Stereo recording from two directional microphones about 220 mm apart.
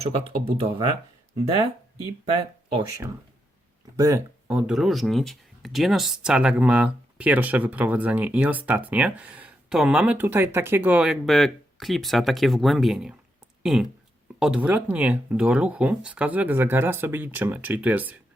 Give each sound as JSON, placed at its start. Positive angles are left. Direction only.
{"t": 0.0, "sound": "speech", "side_deg": -25}
{"t": 2.7, "sound": "speech", "side_deg": -15}